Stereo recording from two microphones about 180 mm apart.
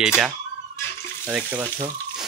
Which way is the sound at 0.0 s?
5° right (ahead or behind).